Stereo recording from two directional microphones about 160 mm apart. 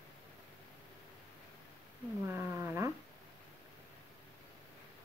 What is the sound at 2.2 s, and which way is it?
Cat, 15° right (ahead or behind).